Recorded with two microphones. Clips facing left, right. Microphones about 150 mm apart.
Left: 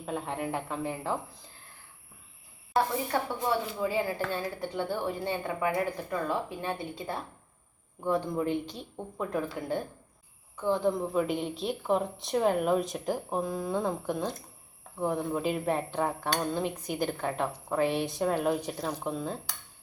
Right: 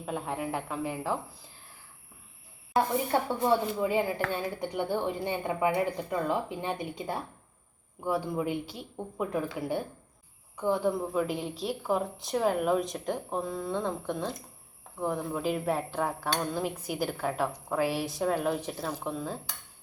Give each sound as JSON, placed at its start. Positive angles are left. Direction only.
{"t": 0.0, "sound": "speech", "side_deg": -5}
{"t": 3.1, "sound": "a woman's voice", "side_deg": -25}